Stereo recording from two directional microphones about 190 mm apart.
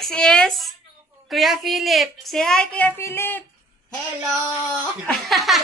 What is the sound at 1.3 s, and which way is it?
Speech, centre (ahead or behind).